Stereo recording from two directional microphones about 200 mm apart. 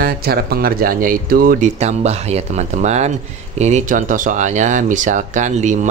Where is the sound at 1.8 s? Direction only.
35° right (ahead or behind).